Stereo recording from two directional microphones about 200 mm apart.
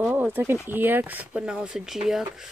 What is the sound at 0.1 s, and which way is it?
Speech, 10° right (ahead or behind).